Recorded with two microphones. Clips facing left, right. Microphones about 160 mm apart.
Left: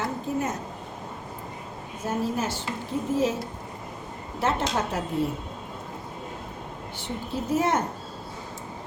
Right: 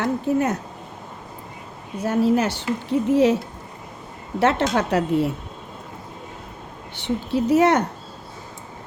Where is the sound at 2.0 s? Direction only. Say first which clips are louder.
Right 8 dB; 70° right (ahead or behind).